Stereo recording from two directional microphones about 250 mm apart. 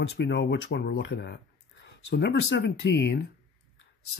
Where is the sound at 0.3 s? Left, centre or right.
Left.